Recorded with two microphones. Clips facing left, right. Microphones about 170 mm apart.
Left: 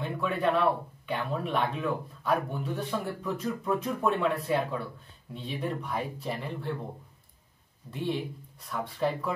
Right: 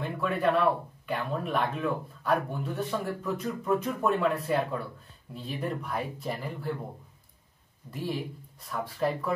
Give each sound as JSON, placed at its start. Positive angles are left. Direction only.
{"t": 0.0, "sound": "speech", "side_deg": 0}
{"t": 7.9, "sound": "speech", "side_deg": -5}